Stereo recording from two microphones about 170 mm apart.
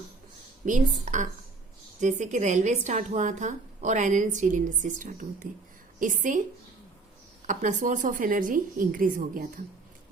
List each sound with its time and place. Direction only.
0.6 s a woman's voice: 45° right (ahead or behind)
7.4 s a woman's voice: 45° right (ahead or behind)